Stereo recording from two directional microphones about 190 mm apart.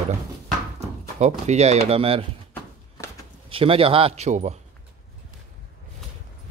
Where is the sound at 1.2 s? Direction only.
35° right (ahead or behind).